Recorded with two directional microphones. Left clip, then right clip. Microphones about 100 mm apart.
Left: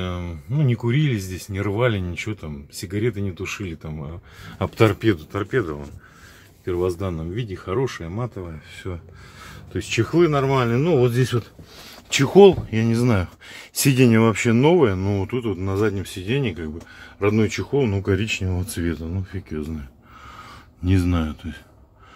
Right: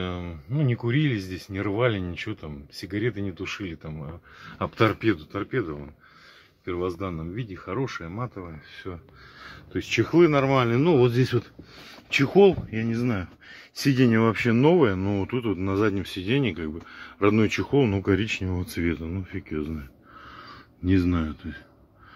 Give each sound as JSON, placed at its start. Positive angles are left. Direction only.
{"t": 0.0, "sound": "speech", "side_deg": -5}
{"t": 4.4, "sound": "speech", "side_deg": 30}
{"t": 5.3, "sound": "speech", "side_deg": 0}
{"t": 9.8, "sound": "speech", "side_deg": 0}
{"t": 10.0, "sound": "speech", "side_deg": -15}
{"t": 10.7, "sound": "speech", "side_deg": -40}
{"t": 12.1, "sound": "speech", "side_deg": 35}
{"t": 12.8, "sound": "speech", "side_deg": 70}
{"t": 13.9, "sound": "speech", "side_deg": 25}
{"t": 14.2, "sound": "speech", "side_deg": 15}
{"t": 17.8, "sound": "speech", "side_deg": -15}
{"t": 18.1, "sound": "speech", "side_deg": 0}
{"t": 20.2, "sound": "a sound", "side_deg": 20}